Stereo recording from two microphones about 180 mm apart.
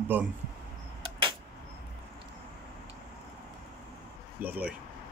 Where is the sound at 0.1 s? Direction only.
10° right (ahead or behind).